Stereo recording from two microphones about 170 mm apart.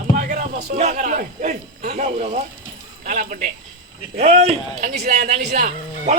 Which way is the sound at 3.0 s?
50° right (ahead or behind).